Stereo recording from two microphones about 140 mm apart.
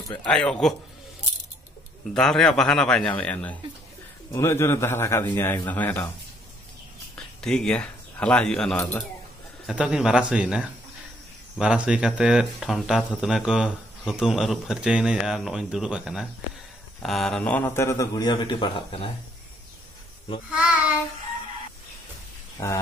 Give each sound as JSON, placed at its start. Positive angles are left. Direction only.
{"t": 0.1, "sound": "speech", "side_deg": 10}
{"t": 2.1, "sound": "a man's voice", "side_deg": 5}
{"t": 7.4, "sound": "speech", "side_deg": 5}
{"t": 9.7, "sound": "a man's voice", "side_deg": -5}